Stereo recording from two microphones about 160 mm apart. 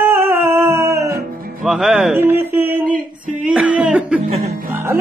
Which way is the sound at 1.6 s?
Centre (ahead or behind).